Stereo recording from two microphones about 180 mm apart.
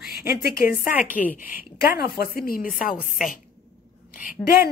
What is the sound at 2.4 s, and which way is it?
Speech, 55° left (ahead or behind).